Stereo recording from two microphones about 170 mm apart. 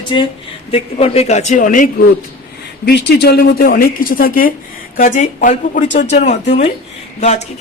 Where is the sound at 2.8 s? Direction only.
70° left (ahead or behind); by 7.4 s 40° left (ahead or behind).